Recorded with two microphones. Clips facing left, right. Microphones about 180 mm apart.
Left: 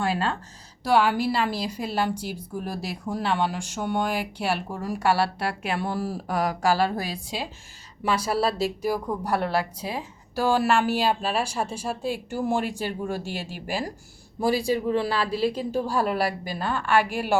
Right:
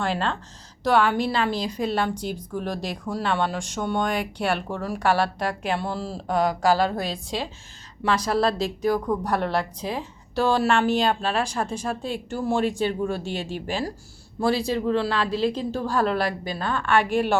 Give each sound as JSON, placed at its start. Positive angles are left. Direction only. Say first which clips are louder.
{"t": 0.0, "sound": "a woman's voice", "louder": "even", "side_deg": 5}
{"t": 2.6, "sound": "speech", "louder": "right 2 dB", "side_deg": -90}
{"t": 2.8, "sound": "a woman's voice", "louder": "right 1 dB", "side_deg": 10}